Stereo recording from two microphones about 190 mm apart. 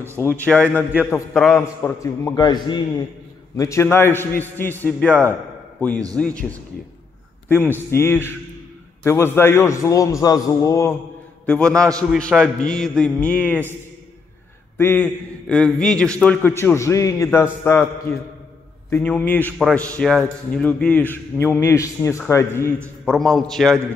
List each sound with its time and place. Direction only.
0.5 s a man's voice: 5° left (ahead or behind)
2.3 s a man's voice: 20° left (ahead or behind); by 6.3 s 5° left (ahead or behind)
7.4 s a man's voice: 10° left (ahead or behind)
14.8 s a man's voice: 10° left (ahead or behind)
23.0 s a man's voice: centre (ahead or behind)